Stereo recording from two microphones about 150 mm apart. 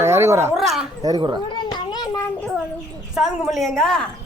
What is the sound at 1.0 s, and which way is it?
Speech, 30° right (ahead or behind).